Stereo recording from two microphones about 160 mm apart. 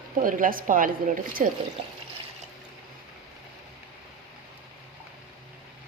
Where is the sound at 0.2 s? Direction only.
60° right (ahead or behind).